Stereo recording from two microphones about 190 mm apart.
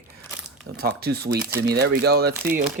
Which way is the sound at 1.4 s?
10° right (ahead or behind).